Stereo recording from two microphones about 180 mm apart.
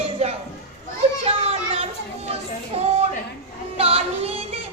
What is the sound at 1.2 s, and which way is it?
Children playing, 35° right (ahead or behind).